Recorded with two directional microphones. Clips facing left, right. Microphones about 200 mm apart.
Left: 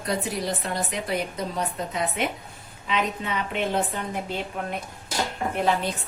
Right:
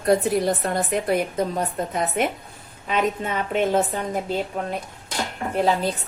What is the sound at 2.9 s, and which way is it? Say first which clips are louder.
Speech: right 4 dB; 45° right (ahead or behind).